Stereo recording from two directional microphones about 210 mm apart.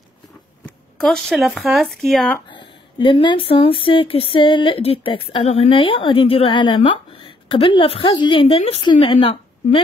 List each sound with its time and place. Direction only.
0.7 s speech: centre (ahead or behind)
2.5 s speech: 25° left (ahead or behind)